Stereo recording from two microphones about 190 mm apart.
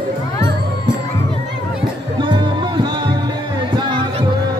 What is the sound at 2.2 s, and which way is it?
Music, 25° right (ahead or behind).